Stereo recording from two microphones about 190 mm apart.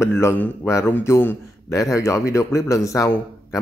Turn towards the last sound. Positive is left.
turn(degrees=15)  # may be behind; listen again after turning